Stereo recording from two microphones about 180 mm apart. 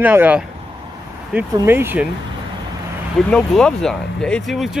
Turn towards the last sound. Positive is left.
turn(degrees=0)  # may be behind; listen again after turning